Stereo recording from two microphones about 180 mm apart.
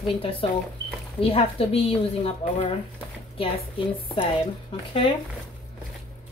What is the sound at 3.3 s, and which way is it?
Speech, 30° left (ahead or behind).